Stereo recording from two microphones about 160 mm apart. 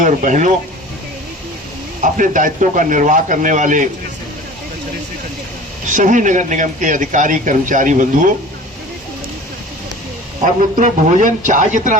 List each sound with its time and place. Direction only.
0.0 s speech: 55° right (ahead or behind)
2.0 s speech: 55° right (ahead or behind)
5.9 s speech: 55° right (ahead or behind)
10.4 s speech: 55° right (ahead or behind)